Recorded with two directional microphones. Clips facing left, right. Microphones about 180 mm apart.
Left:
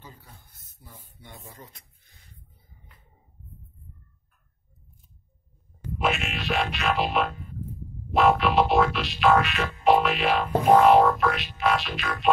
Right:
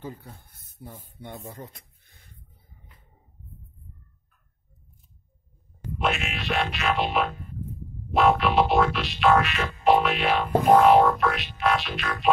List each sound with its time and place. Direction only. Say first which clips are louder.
0.0 s speech: right 10 dB; 55° right (ahead or behind)
5.9 s music: even; centre (ahead or behind)